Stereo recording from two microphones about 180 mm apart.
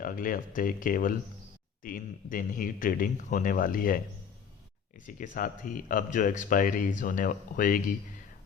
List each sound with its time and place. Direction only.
0.0 s speech: 50° left (ahead or behind)